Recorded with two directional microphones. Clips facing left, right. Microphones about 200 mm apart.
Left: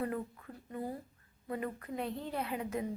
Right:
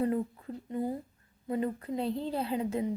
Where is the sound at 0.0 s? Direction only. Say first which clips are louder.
Right 7 dB; 25° right (ahead or behind).